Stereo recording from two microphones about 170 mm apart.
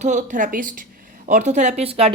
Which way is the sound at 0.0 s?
45° right (ahead or behind).